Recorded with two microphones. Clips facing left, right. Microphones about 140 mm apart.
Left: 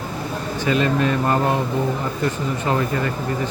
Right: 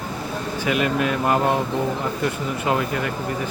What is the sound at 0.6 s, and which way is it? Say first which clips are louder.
Speech: left 2 dB; 10° right (ahead or behind).